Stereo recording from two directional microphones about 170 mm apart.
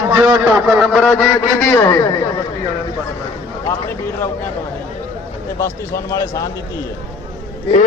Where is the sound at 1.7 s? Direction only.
15° left (ahead or behind).